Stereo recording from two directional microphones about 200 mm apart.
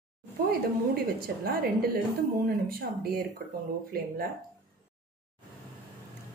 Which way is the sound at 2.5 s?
50° right (ahead or behind).